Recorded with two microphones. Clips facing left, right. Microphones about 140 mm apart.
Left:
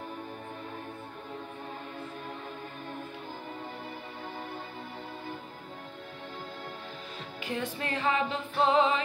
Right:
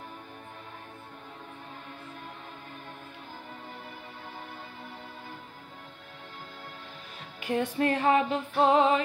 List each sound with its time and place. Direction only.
7.3 s music: 55° right (ahead or behind)